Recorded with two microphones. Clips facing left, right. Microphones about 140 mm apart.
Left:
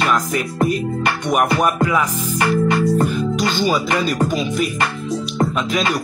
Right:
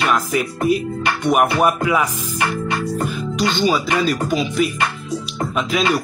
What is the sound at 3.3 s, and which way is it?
Music, centre (ahead or behind).